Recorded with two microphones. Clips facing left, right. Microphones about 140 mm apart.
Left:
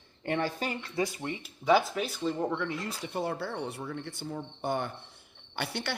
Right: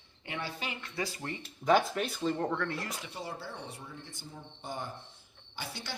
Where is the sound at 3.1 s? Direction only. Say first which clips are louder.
Left 8 dB; 60° left (ahead or behind).